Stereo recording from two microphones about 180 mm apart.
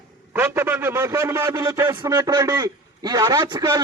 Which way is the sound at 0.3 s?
10° right (ahead or behind).